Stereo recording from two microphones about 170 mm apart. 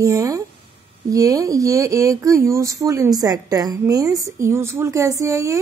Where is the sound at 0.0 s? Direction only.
20° right (ahead or behind).